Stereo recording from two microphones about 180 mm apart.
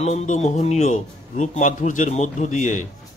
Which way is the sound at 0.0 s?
40° left (ahead or behind).